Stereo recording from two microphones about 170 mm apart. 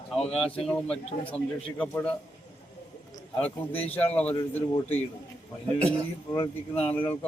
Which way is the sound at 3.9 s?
10° left (ahead or behind).